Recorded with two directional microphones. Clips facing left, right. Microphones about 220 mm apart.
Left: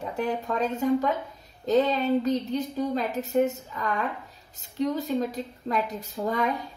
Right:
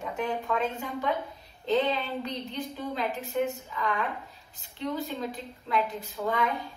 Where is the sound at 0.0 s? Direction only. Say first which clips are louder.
Left 3 dB; 35° left (ahead or behind).